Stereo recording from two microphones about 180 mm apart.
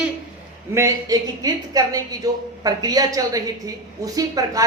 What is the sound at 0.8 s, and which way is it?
A woman's voice, 20° right (ahead or behind).